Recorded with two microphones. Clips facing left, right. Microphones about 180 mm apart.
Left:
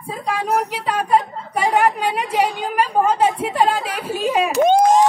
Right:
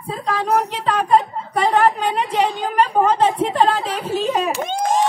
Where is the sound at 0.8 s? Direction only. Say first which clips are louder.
Right 2 dB; 10° left (ahead or behind).